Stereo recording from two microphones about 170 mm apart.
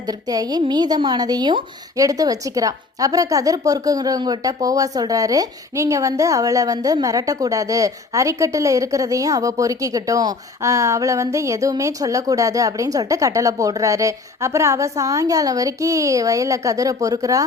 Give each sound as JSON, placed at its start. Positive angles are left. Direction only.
{"t": 0.0, "sound": "a woman's voice", "side_deg": -20}